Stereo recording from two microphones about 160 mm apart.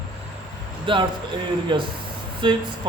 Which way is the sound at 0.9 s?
30° right (ahead or behind).